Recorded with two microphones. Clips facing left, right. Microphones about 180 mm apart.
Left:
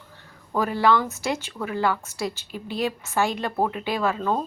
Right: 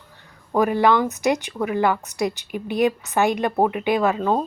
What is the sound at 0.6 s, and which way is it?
Speech, 15° right (ahead or behind).